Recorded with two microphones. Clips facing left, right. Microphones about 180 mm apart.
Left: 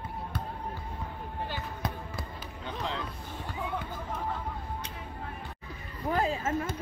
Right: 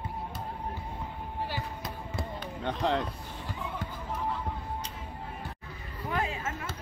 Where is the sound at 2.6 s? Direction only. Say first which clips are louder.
Right 7 dB; 65° right (ahead or behind).